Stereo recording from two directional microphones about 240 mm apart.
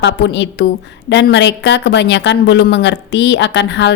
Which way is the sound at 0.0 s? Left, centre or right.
Left.